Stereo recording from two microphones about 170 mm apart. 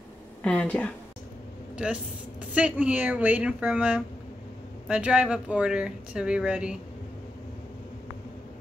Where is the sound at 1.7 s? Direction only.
5° right (ahead or behind).